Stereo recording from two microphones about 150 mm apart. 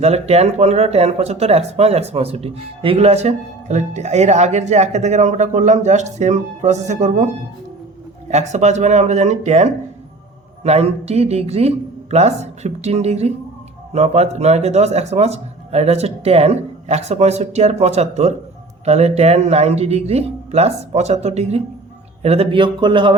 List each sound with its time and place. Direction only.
0.0 s speech: 45° right (ahead or behind)
8.3 s speech: 50° right (ahead or behind); by 23.1 s 30° right (ahead or behind)